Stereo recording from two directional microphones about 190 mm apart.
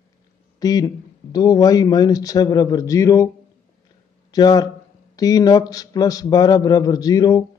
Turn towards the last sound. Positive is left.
turn(degrees=20)  # may be behind; listen again after turning